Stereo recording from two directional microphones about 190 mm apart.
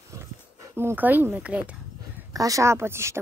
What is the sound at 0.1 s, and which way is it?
Dog, 15° right (ahead or behind).